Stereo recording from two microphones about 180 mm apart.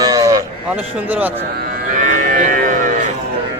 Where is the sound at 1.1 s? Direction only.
10° right (ahead or behind).